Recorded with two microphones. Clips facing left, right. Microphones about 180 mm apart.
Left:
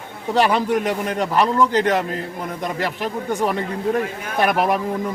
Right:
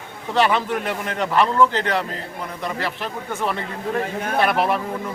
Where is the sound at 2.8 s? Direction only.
45° left (ahead or behind).